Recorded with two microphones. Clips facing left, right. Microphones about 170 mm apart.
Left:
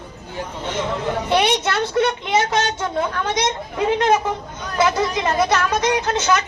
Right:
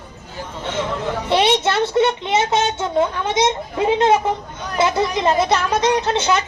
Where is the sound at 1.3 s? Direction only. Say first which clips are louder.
Right 3 dB; 25° right (ahead or behind).